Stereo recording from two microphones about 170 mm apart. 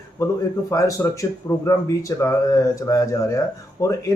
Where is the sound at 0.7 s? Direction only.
20° left (ahead or behind).